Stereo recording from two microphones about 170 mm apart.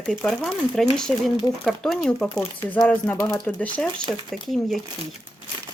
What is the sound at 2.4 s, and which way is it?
Speech, 10° left (ahead or behind).